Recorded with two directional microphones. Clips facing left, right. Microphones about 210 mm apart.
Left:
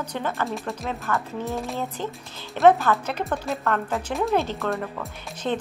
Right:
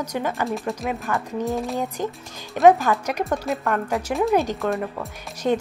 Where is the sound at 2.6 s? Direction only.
10° right (ahead or behind).